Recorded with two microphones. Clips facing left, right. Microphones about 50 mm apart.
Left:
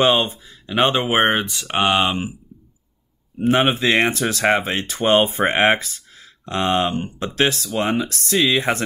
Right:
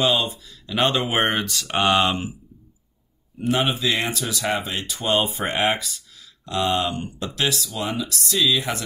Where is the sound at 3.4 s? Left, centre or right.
Left.